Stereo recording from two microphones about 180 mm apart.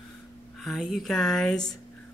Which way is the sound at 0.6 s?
Centre (ahead or behind).